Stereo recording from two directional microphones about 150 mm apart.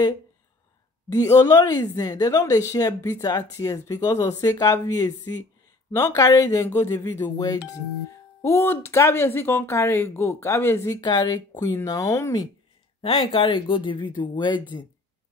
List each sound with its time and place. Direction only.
1.1 s speech: 20° left (ahead or behind)
13.0 s speech: 35° left (ahead or behind)